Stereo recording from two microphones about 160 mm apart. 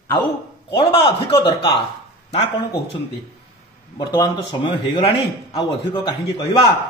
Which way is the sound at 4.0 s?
25° left (ahead or behind).